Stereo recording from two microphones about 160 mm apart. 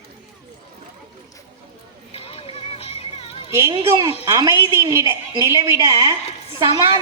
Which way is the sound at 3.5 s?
20° right (ahead or behind).